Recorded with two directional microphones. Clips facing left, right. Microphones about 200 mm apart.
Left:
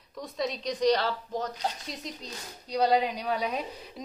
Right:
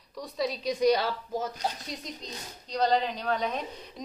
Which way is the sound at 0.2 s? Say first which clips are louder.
Right 1 dB; centre (ahead or behind).